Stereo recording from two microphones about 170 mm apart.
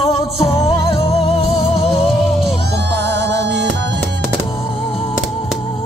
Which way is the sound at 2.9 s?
90° right.